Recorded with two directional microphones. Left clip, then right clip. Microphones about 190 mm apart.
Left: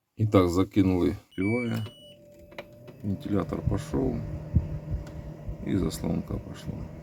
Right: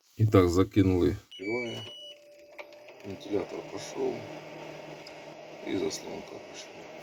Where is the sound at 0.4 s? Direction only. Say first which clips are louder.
Even; 20° left (ahead or behind).